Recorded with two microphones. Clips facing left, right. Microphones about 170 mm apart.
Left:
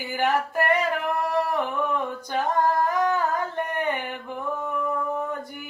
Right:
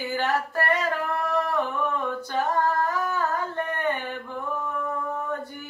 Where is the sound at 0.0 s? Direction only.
15° left (ahead or behind).